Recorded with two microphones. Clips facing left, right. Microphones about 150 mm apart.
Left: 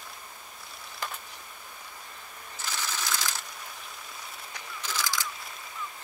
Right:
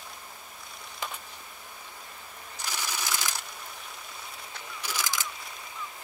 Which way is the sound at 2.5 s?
15° right (ahead or behind).